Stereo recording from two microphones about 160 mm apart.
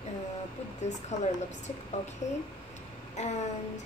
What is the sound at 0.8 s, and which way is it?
Speech, 45° left (ahead or behind).